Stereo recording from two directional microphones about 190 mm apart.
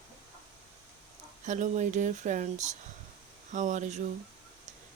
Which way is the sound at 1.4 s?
40° right (ahead or behind).